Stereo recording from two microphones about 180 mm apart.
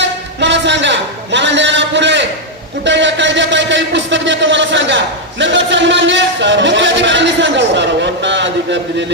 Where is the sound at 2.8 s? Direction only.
80° right.